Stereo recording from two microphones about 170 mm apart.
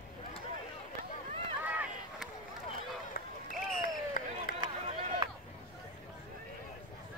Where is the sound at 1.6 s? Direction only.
10° right (ahead or behind).